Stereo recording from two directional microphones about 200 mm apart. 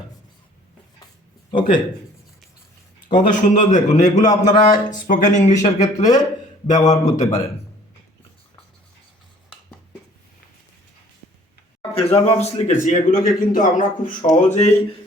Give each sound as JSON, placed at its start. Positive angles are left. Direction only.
{"t": 1.5, "sound": "speech", "side_deg": 25}
{"t": 3.2, "sound": "a man's voice", "side_deg": 40}
{"t": 4.2, "sound": "speech", "side_deg": 20}
{"t": 4.7, "sound": "a man's voice", "side_deg": 40}
{"t": 5.5, "sound": "speech", "side_deg": 15}
{"t": 6.9, "sound": "a man's voice", "side_deg": 35}
{"t": 12.0, "sound": "a man's voice", "side_deg": 30}